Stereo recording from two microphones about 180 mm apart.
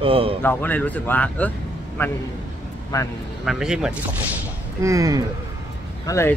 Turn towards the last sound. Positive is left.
turn(degrees=15)  # may be behind; listen again after turning